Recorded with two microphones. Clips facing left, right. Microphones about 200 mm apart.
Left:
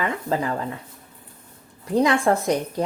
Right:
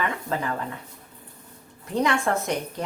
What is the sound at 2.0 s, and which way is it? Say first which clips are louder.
Speech: left 4 dB; 30° left (ahead or behind).